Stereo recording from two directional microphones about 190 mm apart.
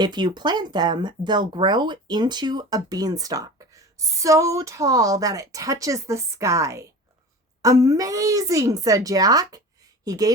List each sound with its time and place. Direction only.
0.0 s a woman's voice: 20° right (ahead or behind)